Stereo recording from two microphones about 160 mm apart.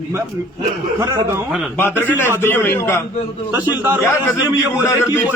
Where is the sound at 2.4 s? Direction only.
15° left (ahead or behind).